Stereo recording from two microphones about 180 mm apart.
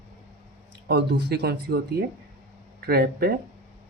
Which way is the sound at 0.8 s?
65° right (ahead or behind).